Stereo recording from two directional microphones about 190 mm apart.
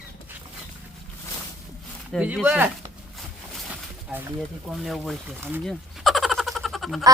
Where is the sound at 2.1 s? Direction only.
5° right (ahead or behind).